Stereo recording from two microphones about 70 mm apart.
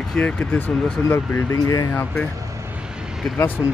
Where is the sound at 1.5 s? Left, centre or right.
Left.